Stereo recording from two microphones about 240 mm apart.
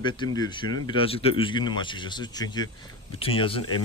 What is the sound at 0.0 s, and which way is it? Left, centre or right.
Speech, centre.